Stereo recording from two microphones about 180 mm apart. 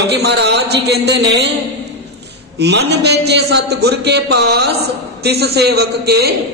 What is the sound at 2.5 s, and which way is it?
A man's voice, 70° right (ahead or behind).